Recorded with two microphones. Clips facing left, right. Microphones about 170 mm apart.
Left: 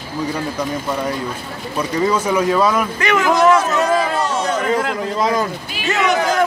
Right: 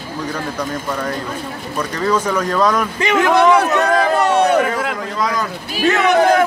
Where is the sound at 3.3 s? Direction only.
60° right (ahead or behind).